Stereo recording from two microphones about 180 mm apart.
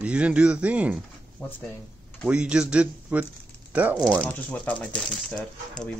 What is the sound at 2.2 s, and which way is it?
Speech, 5° right (ahead or behind).